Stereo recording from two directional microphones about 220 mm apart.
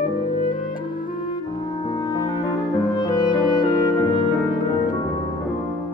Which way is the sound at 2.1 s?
15° left (ahead or behind).